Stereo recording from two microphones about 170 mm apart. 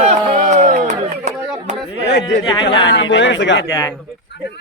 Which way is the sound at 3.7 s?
20° left (ahead or behind).